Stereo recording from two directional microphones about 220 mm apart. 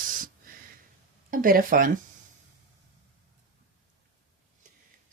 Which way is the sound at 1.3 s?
40° right (ahead or behind).